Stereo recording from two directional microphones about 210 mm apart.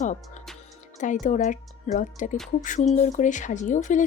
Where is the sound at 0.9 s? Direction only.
35° left (ahead or behind).